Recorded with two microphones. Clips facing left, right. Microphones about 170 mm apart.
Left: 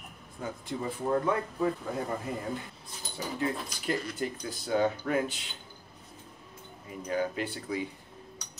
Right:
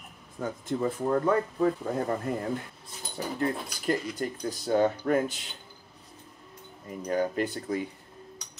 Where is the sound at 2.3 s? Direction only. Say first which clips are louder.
Right 4 dB; 55° right (ahead or behind).